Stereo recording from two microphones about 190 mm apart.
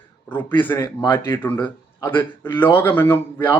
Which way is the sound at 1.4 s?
10° left (ahead or behind).